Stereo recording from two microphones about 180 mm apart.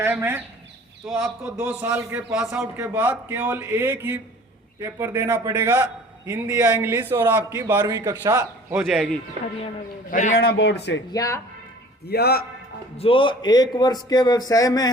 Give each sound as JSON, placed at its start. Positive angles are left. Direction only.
{"t": 0.0, "sound": "a man's voice", "side_deg": -10}
{"t": 10.1, "sound": "a man's voice", "side_deg": 45}
{"t": 10.3, "sound": "a man's voice", "side_deg": 70}
{"t": 11.1, "sound": "a man's voice", "side_deg": 20}
{"t": 12.0, "sound": "a man's voice", "side_deg": 60}
{"t": 13.0, "sound": "a man's voice", "side_deg": 30}